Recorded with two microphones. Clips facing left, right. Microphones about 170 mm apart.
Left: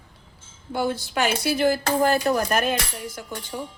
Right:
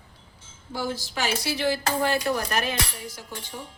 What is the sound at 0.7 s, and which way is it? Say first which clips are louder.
Speech: left 5 dB; 60° left (ahead or behind).